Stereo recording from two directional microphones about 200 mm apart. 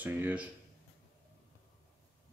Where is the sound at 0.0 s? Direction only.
5° right (ahead or behind).